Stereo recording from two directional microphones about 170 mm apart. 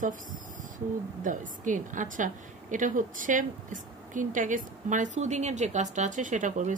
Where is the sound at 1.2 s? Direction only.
50° right (ahead or behind).